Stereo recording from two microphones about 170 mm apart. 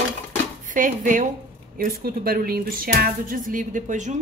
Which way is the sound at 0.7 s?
50° right (ahead or behind).